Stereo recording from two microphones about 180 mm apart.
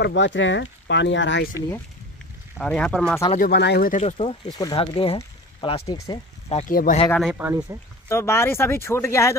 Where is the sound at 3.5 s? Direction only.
70° left (ahead or behind).